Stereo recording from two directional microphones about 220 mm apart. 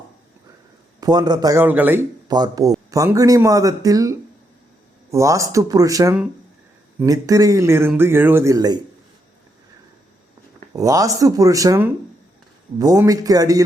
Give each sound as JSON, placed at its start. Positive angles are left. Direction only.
{"t": 1.0, "sound": "speech", "side_deg": -20}
{"t": 10.8, "sound": "speech", "side_deg": -15}